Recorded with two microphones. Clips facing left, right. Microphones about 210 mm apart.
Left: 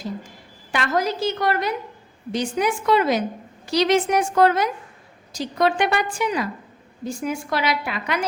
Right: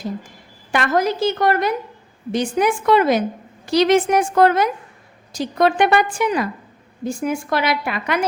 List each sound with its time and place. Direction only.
0.7 s a woman's voice: 50° right (ahead or behind)